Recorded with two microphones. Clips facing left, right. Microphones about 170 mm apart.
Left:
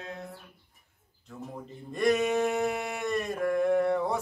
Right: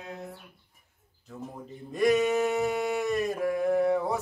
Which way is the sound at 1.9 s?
Centre (ahead or behind).